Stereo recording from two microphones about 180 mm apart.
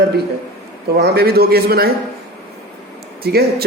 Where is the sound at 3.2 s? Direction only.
60° right (ahead or behind).